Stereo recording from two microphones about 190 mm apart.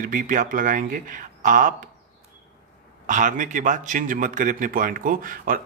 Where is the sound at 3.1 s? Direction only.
45° right (ahead or behind).